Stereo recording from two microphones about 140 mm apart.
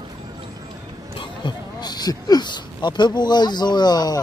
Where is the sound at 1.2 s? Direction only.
30° left (ahead or behind).